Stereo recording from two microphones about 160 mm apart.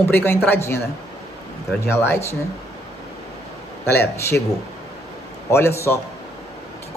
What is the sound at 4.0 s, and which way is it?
Speech, 15° left (ahead or behind).